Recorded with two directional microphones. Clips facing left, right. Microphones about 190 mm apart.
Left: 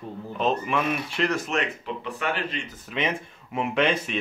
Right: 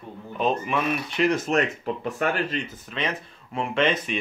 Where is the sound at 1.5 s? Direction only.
40° right (ahead or behind).